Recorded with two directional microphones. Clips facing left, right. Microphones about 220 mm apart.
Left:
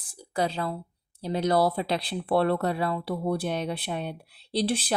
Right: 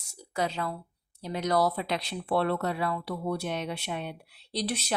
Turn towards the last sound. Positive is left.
turn(degrees=30)  # may be behind; listen again after turning